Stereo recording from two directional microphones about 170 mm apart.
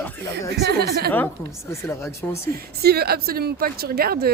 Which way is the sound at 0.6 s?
75° right (ahead or behind).